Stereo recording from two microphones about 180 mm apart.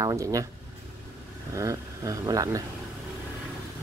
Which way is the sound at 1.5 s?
15° right (ahead or behind).